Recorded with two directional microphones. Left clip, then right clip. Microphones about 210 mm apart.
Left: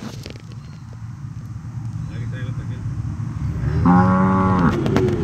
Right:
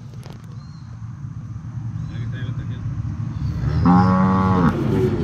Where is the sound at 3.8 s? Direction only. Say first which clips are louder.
Left 1 dB; 35° right (ahead or behind).